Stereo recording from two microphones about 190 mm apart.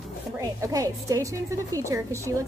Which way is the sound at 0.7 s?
15° right (ahead or behind).